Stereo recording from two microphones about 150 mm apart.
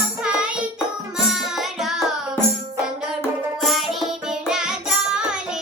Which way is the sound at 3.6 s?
Centre (ahead or behind).